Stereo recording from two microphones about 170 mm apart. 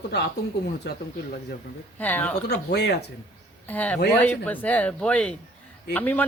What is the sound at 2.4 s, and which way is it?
Speech, 75° left (ahead or behind).